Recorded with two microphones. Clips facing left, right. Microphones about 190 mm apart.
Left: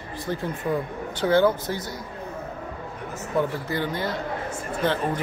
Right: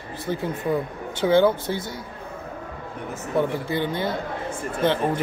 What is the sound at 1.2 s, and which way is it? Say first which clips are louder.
Speech: right 2 dB; 10° right (ahead or behind).